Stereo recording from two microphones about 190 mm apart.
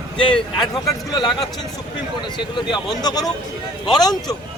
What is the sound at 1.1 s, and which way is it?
A man's voice, 25° left (ahead or behind).